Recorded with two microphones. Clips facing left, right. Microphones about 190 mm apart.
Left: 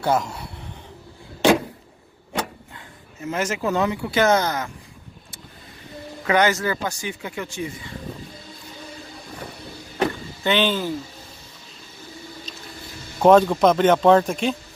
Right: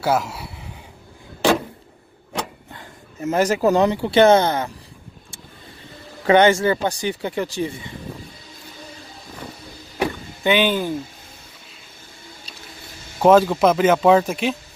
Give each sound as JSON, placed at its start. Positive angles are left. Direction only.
{"t": 0.0, "sound": "a man's voice", "side_deg": -5}
{"t": 2.7, "sound": "speech", "side_deg": -40}
{"t": 6.2, "sound": "speech", "side_deg": -30}
{"t": 9.9, "sound": "vehicle", "side_deg": -10}
{"t": 13.2, "sound": "speech", "side_deg": -5}